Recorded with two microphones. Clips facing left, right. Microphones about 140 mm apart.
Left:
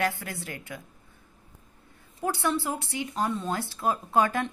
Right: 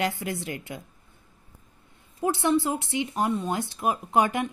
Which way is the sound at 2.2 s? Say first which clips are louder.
Right 4 dB; 20° right (ahead or behind).